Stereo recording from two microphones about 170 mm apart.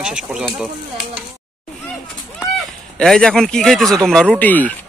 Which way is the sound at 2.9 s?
5° left (ahead or behind).